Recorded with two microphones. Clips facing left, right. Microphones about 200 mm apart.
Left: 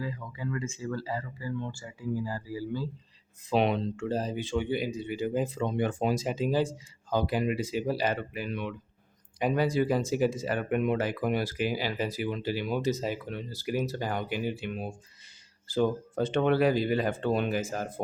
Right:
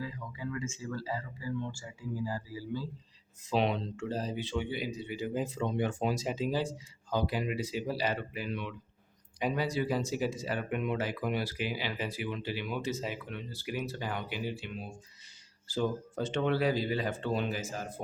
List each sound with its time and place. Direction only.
0.0 s speech: 60° left (ahead or behind)